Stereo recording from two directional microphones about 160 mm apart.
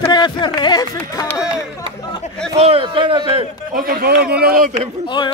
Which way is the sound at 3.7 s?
65° right (ahead or behind).